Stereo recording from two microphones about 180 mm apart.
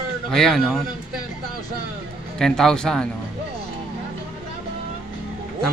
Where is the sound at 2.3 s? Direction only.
5° left (ahead or behind).